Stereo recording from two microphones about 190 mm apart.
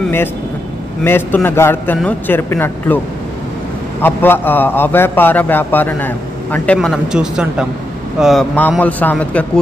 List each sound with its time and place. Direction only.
1.0 s a man's voice: 10° left (ahead or behind)
4.0 s a man's voice: 10° left (ahead or behind)